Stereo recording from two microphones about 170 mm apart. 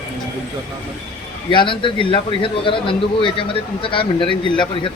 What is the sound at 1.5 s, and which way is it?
Speech, 30° left (ahead or behind).